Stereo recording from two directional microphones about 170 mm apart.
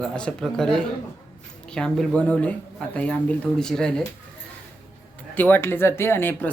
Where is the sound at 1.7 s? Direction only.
5° left (ahead or behind).